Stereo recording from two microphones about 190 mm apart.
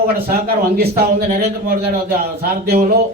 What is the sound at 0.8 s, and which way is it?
A man's voice, 55° right (ahead or behind).